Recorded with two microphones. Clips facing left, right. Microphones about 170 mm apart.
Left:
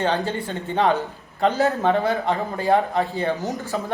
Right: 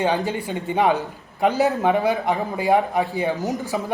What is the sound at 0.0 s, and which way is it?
A man's voice, 15° right (ahead or behind).